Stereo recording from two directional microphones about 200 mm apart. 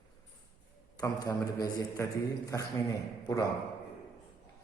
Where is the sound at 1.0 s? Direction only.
20° left (ahead or behind).